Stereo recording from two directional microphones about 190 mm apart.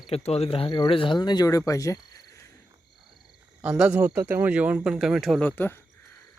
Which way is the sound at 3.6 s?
5° right (ahead or behind).